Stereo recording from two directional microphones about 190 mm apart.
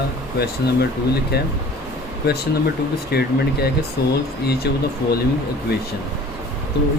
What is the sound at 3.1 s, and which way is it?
Speech, 60° left (ahead or behind).